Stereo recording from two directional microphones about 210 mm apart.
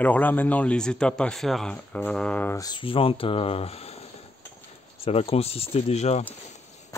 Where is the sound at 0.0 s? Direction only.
10° left (ahead or behind); by 4.0 s 30° left (ahead or behind).